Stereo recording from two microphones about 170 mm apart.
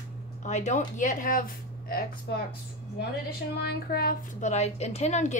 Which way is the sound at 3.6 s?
60° left (ahead or behind).